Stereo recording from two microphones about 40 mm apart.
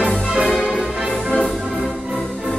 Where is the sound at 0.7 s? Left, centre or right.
Centre.